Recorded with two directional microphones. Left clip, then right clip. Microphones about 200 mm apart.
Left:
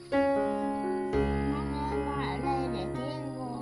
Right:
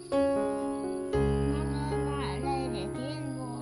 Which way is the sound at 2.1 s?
15° left (ahead or behind).